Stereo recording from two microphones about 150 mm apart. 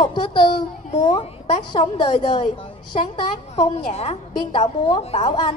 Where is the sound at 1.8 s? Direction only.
50° left (ahead or behind).